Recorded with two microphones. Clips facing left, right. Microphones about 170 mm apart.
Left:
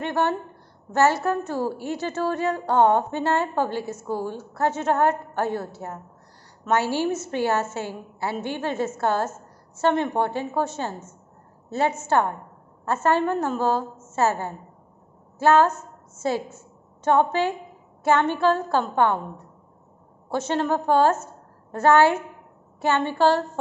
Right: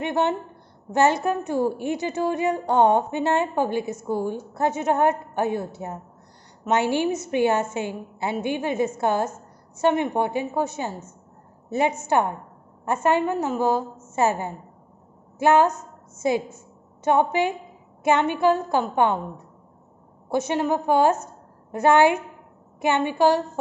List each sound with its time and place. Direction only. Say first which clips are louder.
0.0 s a woman's voice: right 1 dB; 15° right (ahead or behind)
12.0 s a woman's voice: even; 15° right (ahead or behind)